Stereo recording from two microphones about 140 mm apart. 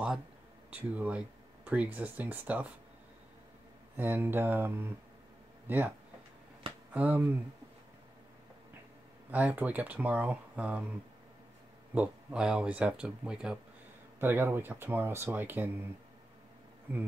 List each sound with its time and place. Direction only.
0.7 s speech: 10° right (ahead or behind)
3.9 s speech: 15° right (ahead or behind)
9.3 s speech: 10° right (ahead or behind)
11.9 s speech: 10° right (ahead or behind)